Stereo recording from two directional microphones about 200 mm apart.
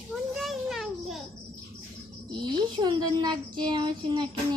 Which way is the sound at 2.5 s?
20° right (ahead or behind).